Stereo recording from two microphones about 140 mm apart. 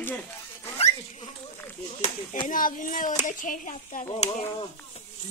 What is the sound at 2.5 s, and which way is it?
Speech, 75° left (ahead or behind).